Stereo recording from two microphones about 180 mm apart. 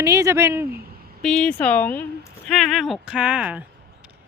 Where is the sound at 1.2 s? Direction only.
5° left (ahead or behind).